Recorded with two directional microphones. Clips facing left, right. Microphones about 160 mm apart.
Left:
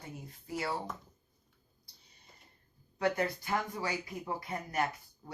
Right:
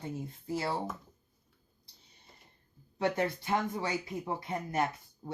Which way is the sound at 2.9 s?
25° right (ahead or behind).